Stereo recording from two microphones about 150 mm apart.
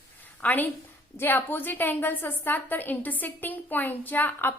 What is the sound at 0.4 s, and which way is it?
A woman's voice, 10° left (ahead or behind).